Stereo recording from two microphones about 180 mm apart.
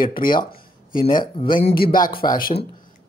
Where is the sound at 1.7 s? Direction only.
55° left (ahead or behind).